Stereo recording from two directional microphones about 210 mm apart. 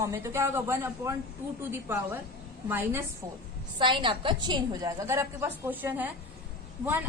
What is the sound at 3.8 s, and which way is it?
A woman's voice, 25° right (ahead or behind).